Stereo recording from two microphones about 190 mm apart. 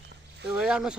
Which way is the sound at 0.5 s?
5° right (ahead or behind).